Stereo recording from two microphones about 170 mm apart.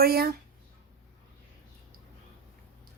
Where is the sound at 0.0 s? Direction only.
65° right (ahead or behind).